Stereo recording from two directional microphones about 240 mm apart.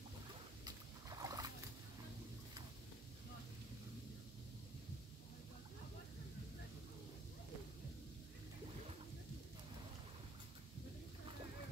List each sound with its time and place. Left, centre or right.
0.7 s boat: centre